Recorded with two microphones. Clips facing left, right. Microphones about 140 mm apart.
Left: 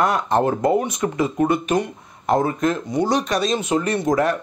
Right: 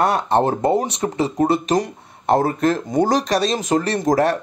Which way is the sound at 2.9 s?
45° right (ahead or behind).